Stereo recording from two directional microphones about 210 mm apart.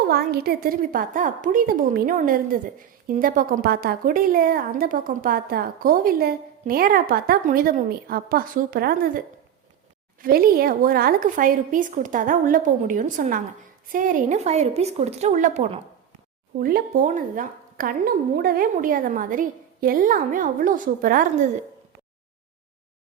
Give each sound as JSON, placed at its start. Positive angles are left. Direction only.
{"t": 0.0, "sound": "a woman's voice", "side_deg": -50}